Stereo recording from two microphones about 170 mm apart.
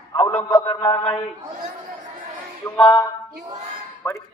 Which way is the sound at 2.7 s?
10° left (ahead or behind).